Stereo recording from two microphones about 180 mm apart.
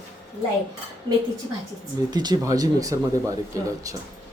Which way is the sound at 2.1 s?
20° right (ahead or behind).